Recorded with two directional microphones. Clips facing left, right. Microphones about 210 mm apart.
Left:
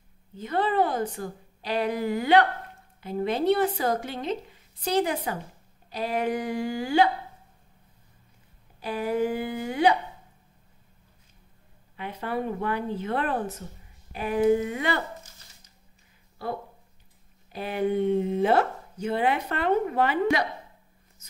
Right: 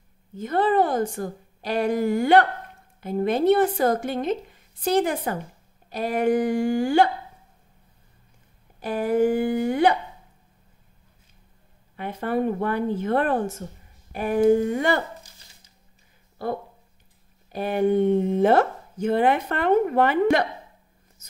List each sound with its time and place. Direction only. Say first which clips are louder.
0.4 s speech: right 4 dB; 50° right (ahead or behind)
8.7 s speech: right 5 dB; 50° right (ahead or behind)
12.0 s speech: right 6 dB; 50° right (ahead or behind)
17.5 s speech: right 5 dB; 45° right (ahead or behind)